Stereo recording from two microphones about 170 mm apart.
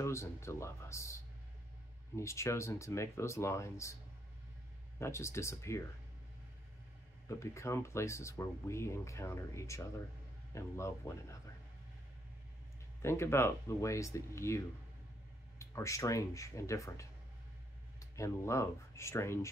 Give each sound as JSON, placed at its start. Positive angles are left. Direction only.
{"t": 0.0, "sound": "speech", "side_deg": 15}
{"t": 4.9, "sound": "speech", "side_deg": 15}
{"t": 7.2, "sound": "speech", "side_deg": 15}
{"t": 13.0, "sound": "speech", "side_deg": 15}
{"t": 15.6, "sound": "speech", "side_deg": 15}